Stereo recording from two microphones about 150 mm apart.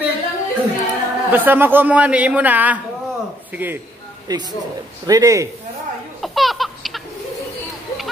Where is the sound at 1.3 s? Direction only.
15° right (ahead or behind).